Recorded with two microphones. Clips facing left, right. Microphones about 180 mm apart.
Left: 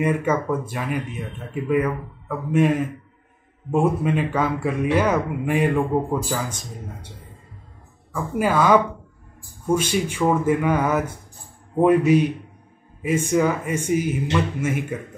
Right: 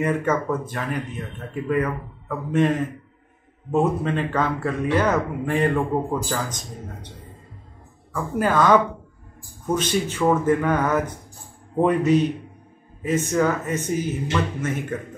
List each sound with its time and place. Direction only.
0.0 s speech: 10° left (ahead or behind)
8.1 s speech: 10° left (ahead or behind)